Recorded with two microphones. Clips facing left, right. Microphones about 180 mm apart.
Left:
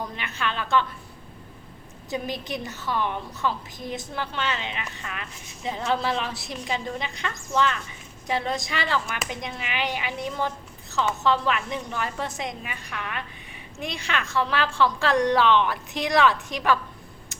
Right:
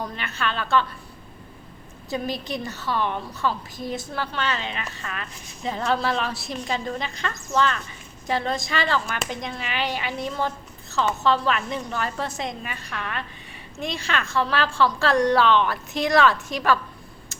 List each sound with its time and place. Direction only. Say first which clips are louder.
0.2 s a woman's voice: right 2 dB; 15° left (ahead or behind)
2.0 s a woman's voice: right 2 dB; 15° left (ahead or behind)